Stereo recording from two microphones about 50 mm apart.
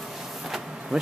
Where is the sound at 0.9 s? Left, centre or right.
Centre.